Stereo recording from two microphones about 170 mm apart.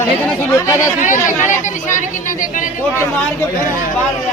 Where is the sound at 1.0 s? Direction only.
50° left (ahead or behind).